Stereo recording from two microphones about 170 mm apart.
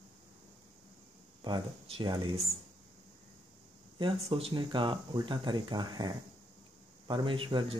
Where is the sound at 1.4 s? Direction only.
30° right (ahead or behind).